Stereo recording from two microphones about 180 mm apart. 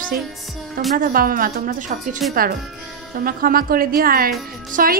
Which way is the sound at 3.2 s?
55° right (ahead or behind).